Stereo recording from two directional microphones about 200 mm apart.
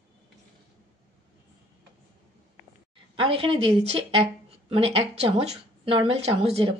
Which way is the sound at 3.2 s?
30° right (ahead or behind).